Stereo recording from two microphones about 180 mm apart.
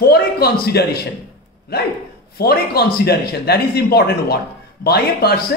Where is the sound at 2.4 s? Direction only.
60° left (ahead or behind).